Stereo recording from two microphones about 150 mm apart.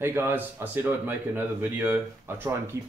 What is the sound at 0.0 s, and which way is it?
Speech, 15° right (ahead or behind).